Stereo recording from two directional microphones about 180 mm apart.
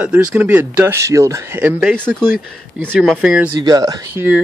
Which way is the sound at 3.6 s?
20° right (ahead or behind).